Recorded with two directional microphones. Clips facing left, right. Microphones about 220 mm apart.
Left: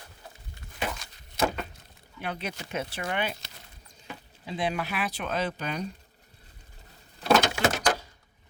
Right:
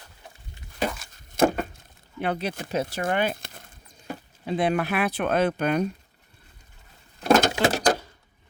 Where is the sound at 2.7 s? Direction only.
40° right (ahead or behind); by 5.8 s 55° right (ahead or behind).